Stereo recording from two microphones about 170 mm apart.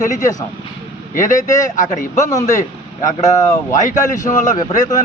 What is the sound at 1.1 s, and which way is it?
Speech, 50° left (ahead or behind).